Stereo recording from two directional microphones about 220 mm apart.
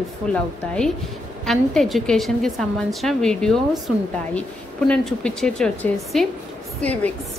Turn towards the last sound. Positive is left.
turn(degrees=5)  # may be behind; listen again after turning